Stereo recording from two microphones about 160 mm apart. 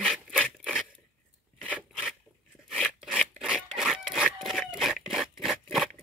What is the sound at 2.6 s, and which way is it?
Filing, 5° right (ahead or behind).